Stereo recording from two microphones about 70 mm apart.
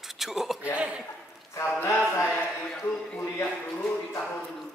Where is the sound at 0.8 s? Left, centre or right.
Centre.